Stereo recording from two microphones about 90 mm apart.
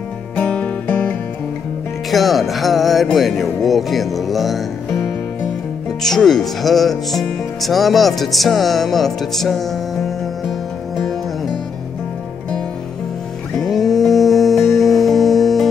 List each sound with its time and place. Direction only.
0.4 s music: 15° left (ahead or behind)
2.0 s speech: centre (ahead or behind)
5.9 s speech: 5° left (ahead or behind)
13.6 s music: 5° left (ahead or behind)